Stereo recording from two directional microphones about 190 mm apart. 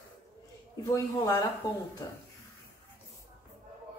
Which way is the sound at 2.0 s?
20° left (ahead or behind).